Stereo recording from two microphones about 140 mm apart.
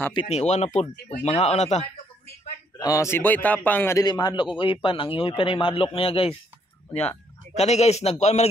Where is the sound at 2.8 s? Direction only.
25° left (ahead or behind).